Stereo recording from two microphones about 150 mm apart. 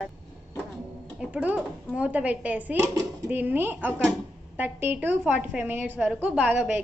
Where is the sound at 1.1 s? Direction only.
10° right (ahead or behind).